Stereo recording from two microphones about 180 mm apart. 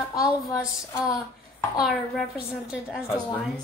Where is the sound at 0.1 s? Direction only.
20° left (ahead or behind).